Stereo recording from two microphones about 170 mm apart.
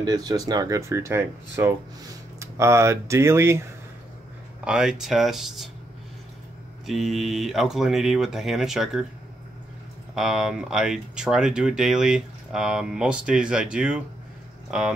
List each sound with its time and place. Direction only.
0.0 s speech: 25° right (ahead or behind)
4.6 s speech: 5° right (ahead or behind)
6.9 s speech: centre (ahead or behind)
10.1 s speech: 5° right (ahead or behind)